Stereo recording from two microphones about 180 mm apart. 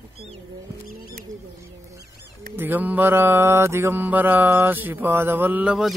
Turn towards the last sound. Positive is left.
turn(degrees=-5)  # may be behind; listen again after turning